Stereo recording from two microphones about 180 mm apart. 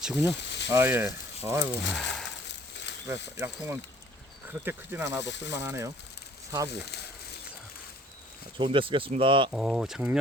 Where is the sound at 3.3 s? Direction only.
15° right (ahead or behind).